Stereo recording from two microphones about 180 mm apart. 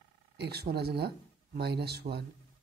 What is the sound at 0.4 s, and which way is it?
Speech, 65° right (ahead or behind).